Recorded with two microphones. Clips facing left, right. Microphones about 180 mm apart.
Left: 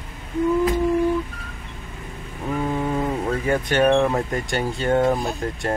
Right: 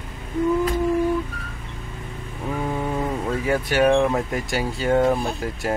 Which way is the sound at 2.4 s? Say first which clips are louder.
Left 2 dB; centre (ahead or behind).